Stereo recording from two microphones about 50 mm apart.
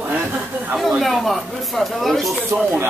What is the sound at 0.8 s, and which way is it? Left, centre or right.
Speech, centre.